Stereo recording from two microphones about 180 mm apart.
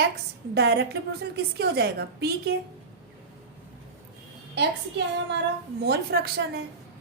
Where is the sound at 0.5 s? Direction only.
65° right (ahead or behind).